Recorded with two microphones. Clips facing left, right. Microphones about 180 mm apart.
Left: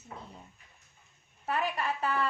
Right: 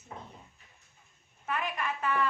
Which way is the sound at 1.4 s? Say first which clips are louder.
Left 2 dB; 35° left (ahead or behind).